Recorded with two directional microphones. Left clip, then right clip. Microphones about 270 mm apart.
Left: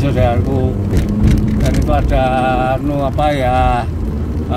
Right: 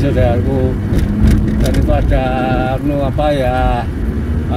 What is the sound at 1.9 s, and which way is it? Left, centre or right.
Speech, centre.